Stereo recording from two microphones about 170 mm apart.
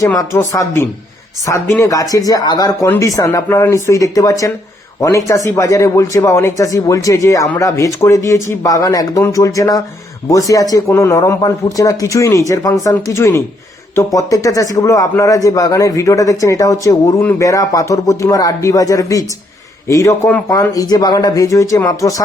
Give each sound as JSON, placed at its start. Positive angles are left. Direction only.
{"t": 0.0, "sound": "speech", "side_deg": 20}